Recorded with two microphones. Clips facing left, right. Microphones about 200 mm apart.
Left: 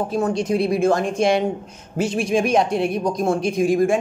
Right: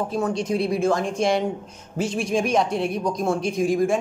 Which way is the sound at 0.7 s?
70° left (ahead or behind).